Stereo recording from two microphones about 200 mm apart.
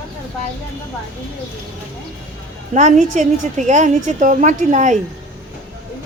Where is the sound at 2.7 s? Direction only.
35° right (ahead or behind).